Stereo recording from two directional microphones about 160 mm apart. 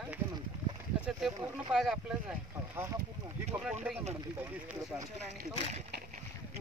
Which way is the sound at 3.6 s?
10° right (ahead or behind).